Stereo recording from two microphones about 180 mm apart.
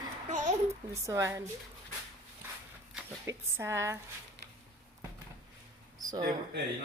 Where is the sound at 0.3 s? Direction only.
40° right (ahead or behind).